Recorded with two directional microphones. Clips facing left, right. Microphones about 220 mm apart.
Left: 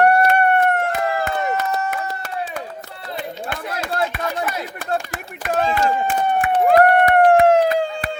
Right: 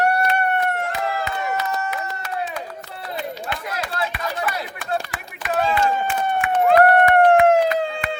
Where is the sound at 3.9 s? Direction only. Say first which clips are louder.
Left 6 dB; 45° left (ahead or behind).